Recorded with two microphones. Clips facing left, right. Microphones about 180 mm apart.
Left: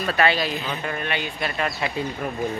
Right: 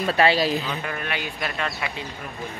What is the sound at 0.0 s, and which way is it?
Speech, 30° right (ahead or behind).